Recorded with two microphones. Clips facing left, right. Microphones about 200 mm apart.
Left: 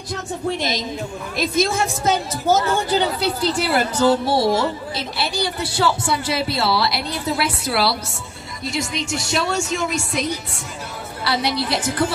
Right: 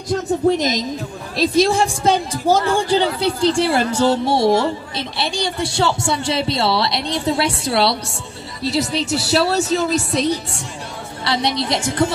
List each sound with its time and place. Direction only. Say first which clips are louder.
0.6 s a woman's voice: right 3 dB; 40° right (ahead or behind); by 12.1 s 25° right (ahead or behind)